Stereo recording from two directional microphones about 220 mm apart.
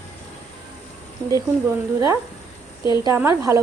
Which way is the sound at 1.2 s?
15° right (ahead or behind).